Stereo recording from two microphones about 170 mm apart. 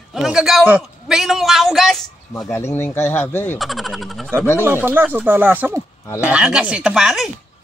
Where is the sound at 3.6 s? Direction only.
Centre (ahead or behind).